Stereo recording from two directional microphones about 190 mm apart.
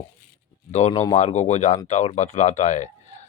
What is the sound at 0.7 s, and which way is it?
Speech, 35° left (ahead or behind).